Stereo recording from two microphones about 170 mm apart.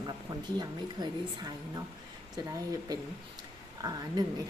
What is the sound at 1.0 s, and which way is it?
Speech, 25° right (ahead or behind).